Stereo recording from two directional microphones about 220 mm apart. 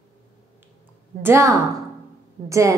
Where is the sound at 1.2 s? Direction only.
10° right (ahead or behind).